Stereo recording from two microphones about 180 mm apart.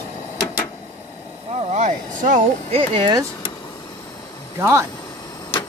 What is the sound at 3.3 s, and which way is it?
Vehicle, 25° left (ahead or behind).